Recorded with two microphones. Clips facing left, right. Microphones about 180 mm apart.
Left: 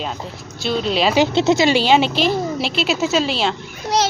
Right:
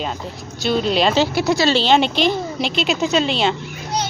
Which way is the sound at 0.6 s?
Centre (ahead or behind).